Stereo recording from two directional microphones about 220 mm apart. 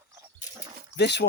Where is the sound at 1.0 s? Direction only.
50° left (ahead or behind).